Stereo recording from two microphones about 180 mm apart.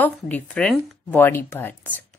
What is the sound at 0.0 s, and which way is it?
Speech, 5° left (ahead or behind).